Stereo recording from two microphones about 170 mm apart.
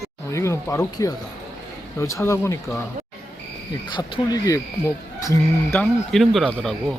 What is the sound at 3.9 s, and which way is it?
Speech, 25° left (ahead or behind).